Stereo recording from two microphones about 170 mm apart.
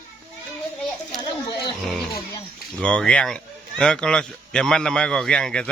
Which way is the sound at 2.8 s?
5° left (ahead or behind).